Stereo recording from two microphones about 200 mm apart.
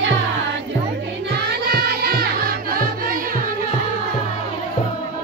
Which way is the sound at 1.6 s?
50° right (ahead or behind).